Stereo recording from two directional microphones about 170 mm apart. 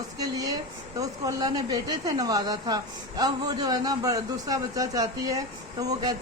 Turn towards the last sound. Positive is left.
turn(degrees=-20)  # may be behind; listen again after turning